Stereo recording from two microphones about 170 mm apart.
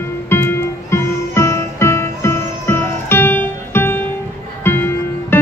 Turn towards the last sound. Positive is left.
turn(degrees=15)  # may be behind; listen again after turning